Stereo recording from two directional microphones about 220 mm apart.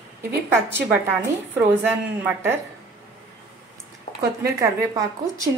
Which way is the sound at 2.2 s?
10° right (ahead or behind).